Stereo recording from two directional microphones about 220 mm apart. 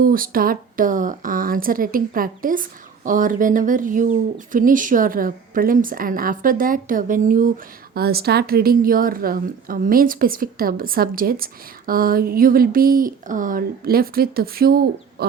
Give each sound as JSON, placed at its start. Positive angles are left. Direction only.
{"t": 0.0, "sound": "a woman's voice", "side_deg": -40}